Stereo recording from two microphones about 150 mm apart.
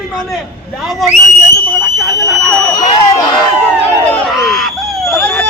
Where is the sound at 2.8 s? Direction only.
30° left (ahead or behind).